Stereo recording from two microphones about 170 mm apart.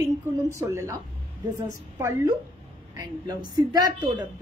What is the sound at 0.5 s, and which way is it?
A woman's voice, 15° right (ahead or behind).